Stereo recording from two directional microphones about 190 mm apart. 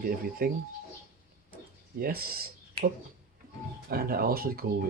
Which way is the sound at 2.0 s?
50° right (ahead or behind).